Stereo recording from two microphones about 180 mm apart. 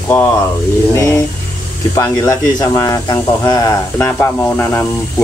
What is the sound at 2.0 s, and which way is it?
Speech, 20° left (ahead or behind).